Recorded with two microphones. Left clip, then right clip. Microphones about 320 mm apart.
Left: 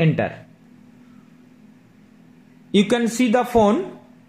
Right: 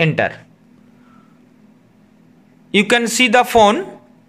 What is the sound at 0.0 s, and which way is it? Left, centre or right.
Speech, right.